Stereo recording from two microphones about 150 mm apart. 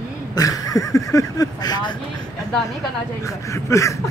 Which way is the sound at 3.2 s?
20° left (ahead or behind).